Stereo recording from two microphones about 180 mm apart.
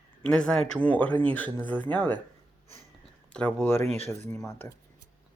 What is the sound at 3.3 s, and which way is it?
Speech, 10° left (ahead or behind).